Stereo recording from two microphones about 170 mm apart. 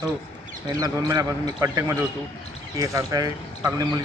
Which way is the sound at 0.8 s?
20° right (ahead or behind).